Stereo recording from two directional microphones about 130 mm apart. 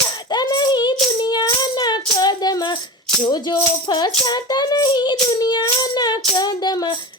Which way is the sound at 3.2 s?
35° left (ahead or behind).